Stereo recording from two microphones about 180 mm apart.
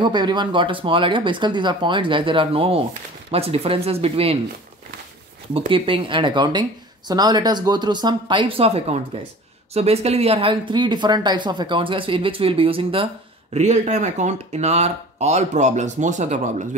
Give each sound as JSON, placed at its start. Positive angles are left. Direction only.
{"t": 0.0, "sound": "speech", "side_deg": -25}
{"t": 5.7, "sound": "speech", "side_deg": -30}